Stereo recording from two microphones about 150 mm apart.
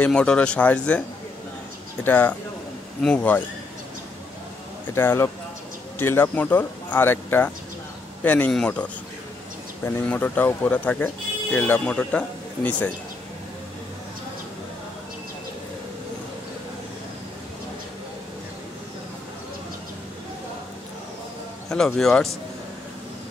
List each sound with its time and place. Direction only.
0.0 s speech: 5° left (ahead or behind)
2.0 s speech: 10° left (ahead or behind)
4.9 s speech: 15° left (ahead or behind)
9.8 s speech: 10° left (ahead or behind)
21.6 s a man's voice: 5° left (ahead or behind)